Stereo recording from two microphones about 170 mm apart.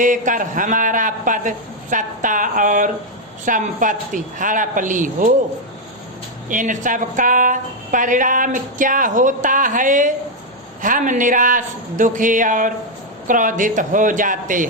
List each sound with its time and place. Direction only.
0.0 s a woman's voice: 50° right (ahead or behind)
6.5 s a woman's voice: 50° right (ahead or behind)